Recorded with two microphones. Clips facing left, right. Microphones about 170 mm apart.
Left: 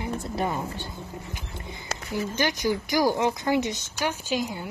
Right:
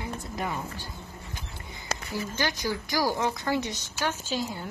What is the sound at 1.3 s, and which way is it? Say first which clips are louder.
A woman's voice: left 4 dB; 20° left (ahead or behind).